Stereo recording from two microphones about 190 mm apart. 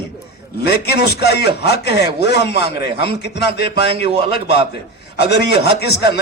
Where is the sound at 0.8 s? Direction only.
60° left (ahead or behind).